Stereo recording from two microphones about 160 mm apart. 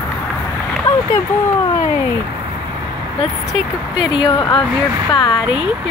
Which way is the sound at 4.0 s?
30° left (ahead or behind).